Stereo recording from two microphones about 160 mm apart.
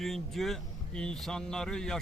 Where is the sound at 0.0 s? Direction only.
Centre (ahead or behind).